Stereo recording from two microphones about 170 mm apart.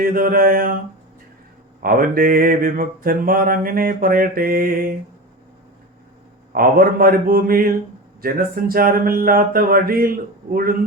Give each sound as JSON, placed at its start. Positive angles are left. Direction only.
{"t": 0.0, "sound": "mantra", "side_deg": -55}
{"t": 1.8, "sound": "mantra", "side_deg": -55}
{"t": 6.5, "sound": "mantra", "side_deg": -60}